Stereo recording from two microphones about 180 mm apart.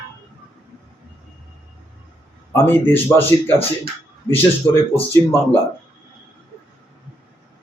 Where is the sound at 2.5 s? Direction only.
10° left (ahead or behind).